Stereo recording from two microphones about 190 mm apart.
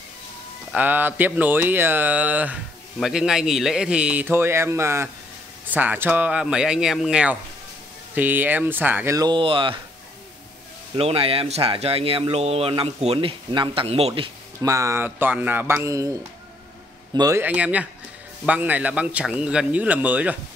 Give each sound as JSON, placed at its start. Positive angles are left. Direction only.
{"t": 0.7, "sound": "speech", "side_deg": -10}
{"t": 11.0, "sound": "speech", "side_deg": -30}
{"t": 14.7, "sound": "a man's voice", "side_deg": -15}
{"t": 17.4, "sound": "speech", "side_deg": -10}